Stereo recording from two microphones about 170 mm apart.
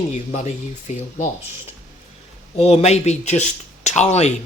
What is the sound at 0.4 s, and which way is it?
Speech, 40° left (ahead or behind).